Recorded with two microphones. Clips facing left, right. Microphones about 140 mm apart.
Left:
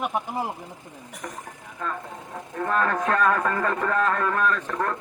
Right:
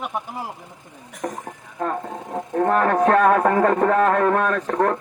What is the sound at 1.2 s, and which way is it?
Speech, 40° right (ahead or behind).